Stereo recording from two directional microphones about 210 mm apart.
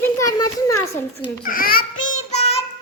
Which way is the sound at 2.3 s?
30° left (ahead or behind).